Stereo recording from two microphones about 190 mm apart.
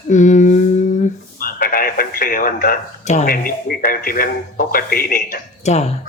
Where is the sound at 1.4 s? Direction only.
50° left (ahead or behind).